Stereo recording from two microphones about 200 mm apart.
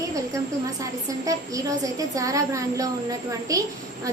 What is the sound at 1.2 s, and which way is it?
A woman's voice, 15° right (ahead or behind).